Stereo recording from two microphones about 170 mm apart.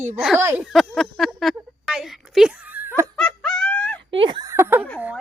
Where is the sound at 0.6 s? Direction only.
Centre (ahead or behind).